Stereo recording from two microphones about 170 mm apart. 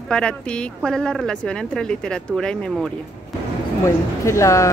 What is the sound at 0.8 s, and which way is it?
Speech, 5° left (ahead or behind).